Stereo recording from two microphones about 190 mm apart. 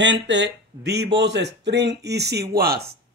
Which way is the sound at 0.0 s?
70° right (ahead or behind).